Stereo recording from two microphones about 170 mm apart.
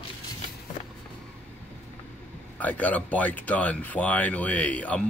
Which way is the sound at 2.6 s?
10° left (ahead or behind).